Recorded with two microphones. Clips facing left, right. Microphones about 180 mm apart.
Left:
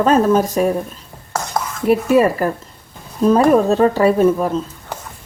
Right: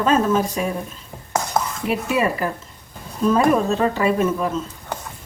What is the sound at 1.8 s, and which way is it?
Speech, 40° left (ahead or behind).